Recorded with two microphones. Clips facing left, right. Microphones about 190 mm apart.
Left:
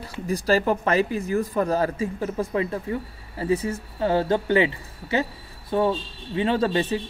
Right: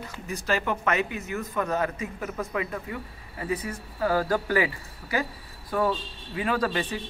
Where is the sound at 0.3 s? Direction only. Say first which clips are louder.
Left 7 dB; 35° left (ahead or behind).